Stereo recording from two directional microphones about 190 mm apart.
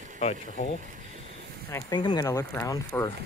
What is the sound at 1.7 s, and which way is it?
Speech, 20° left (ahead or behind).